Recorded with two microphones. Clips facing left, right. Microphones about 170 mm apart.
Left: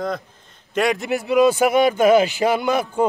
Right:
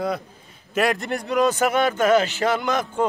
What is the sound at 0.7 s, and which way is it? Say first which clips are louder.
A man's voice: left 2 dB; centre (ahead or behind).